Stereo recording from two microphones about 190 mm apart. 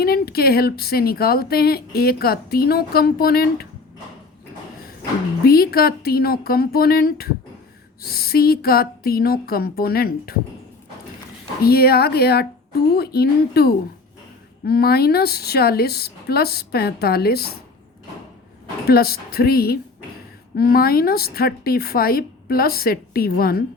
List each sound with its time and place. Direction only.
0.0 s speech: 55° left (ahead or behind)
5.4 s speech: 55° left (ahead or behind)
11.6 s speech: 55° left (ahead or behind)
18.9 s speech: 55° left (ahead or behind)